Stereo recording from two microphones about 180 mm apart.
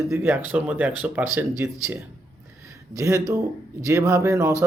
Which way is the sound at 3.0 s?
15° right (ahead or behind).